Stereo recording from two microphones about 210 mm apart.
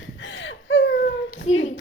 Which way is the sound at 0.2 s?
65° left (ahead or behind).